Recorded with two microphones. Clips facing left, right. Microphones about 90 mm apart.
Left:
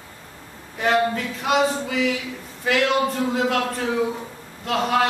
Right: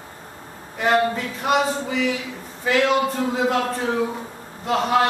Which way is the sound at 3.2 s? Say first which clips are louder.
Right 1 dB; centre (ahead or behind).